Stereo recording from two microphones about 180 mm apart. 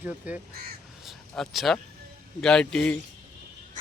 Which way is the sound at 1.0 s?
Centre (ahead or behind).